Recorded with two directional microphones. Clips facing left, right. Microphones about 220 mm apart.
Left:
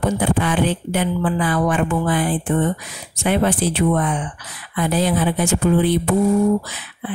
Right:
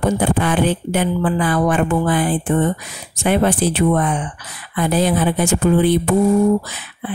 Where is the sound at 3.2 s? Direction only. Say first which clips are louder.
Right 2 dB; 45° right (ahead or behind).